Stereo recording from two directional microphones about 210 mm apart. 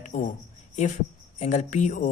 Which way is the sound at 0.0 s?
40° left (ahead or behind).